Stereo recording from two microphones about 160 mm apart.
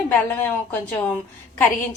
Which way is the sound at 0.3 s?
10° left (ahead or behind).